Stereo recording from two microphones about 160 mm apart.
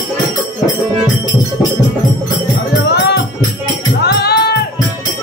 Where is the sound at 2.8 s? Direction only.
90° left.